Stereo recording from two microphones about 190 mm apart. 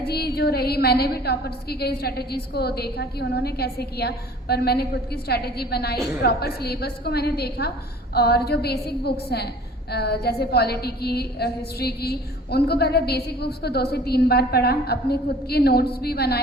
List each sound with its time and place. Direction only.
0.0 s a woman's voice: 55° left (ahead or behind)